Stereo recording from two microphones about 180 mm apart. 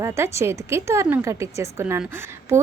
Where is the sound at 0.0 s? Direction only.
15° right (ahead or behind).